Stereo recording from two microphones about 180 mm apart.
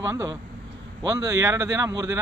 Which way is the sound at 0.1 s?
15° right (ahead or behind).